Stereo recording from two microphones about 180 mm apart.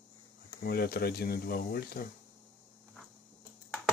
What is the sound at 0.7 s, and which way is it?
Speech, 60° left (ahead or behind).